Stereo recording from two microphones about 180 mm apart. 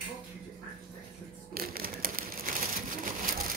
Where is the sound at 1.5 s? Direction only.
55° right (ahead or behind).